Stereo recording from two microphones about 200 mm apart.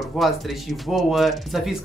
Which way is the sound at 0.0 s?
Centre (ahead or behind).